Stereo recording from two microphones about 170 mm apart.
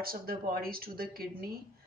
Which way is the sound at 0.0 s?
60° right (ahead or behind).